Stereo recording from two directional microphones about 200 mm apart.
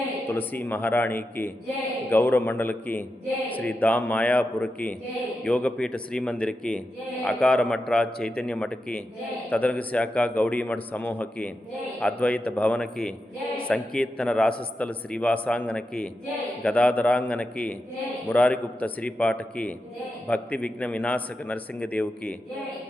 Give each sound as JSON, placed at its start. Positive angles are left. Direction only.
{"t": 0.3, "sound": "a man's voice", "side_deg": 10}